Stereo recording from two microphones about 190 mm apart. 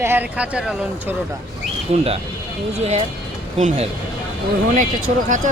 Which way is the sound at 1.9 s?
35° right (ahead or behind).